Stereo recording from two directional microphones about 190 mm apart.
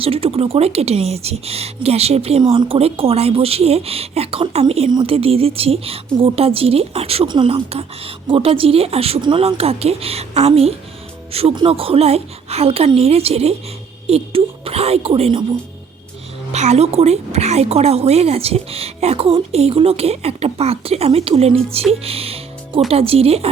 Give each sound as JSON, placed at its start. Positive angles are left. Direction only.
{"t": 0.0, "sound": "a woman's voice", "side_deg": -30}
{"t": 16.5, "sound": "a woman's voice", "side_deg": -35}
{"t": 22.0, "sound": "music", "side_deg": -30}
{"t": 22.9, "sound": "a woman's voice", "side_deg": -30}